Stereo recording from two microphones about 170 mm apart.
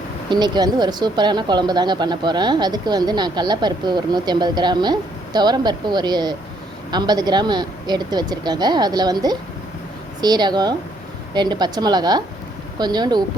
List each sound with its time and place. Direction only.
0.3 s speech: 25° right (ahead or behind)